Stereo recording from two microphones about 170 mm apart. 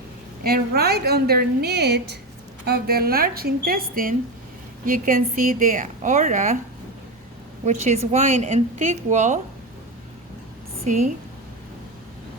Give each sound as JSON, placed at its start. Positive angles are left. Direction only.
{"t": 0.4, "sound": "a woman's voice", "side_deg": -65}
{"t": 7.6, "sound": "a woman's voice", "side_deg": -40}
{"t": 10.8, "sound": "a woman's voice", "side_deg": -45}